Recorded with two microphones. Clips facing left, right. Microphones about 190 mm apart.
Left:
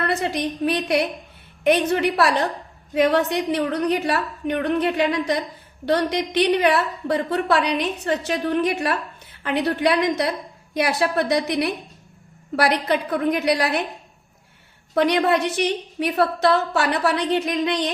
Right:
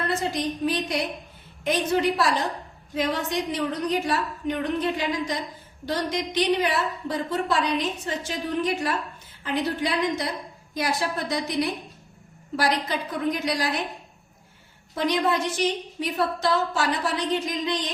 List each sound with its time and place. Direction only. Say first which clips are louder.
0.0 s a woman's voice: left 3 dB; 65° left (ahead or behind)
14.9 s a woman's voice: left 5 dB; 65° left (ahead or behind)